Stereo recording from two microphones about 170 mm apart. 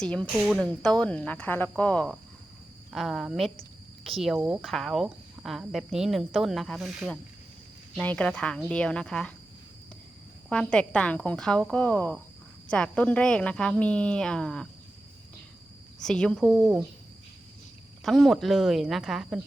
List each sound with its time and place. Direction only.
0.0 s a woman's voice: 5° left (ahead or behind)
10.5 s speech: 5° left (ahead or behind)
16.0 s speech: 5° left (ahead or behind)
18.0 s speech: centre (ahead or behind)